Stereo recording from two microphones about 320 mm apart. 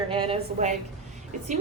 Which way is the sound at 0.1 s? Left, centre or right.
Centre.